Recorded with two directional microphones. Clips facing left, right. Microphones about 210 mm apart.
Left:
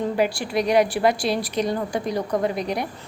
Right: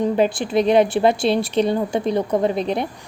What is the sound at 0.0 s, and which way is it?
A woman's voice, 20° right (ahead or behind).